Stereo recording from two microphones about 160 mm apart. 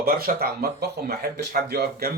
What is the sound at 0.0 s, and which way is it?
Speech, 70° right (ahead or behind).